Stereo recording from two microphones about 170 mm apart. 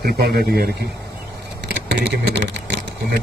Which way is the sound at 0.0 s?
65° right (ahead or behind).